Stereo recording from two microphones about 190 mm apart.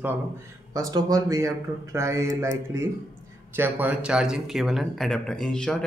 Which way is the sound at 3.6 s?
10° right (ahead or behind).